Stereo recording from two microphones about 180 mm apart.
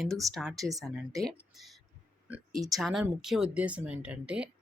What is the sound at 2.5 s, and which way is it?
Speech, 20° right (ahead or behind).